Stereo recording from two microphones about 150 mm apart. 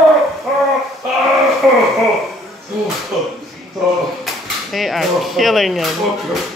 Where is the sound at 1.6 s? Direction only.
5° right (ahead or behind).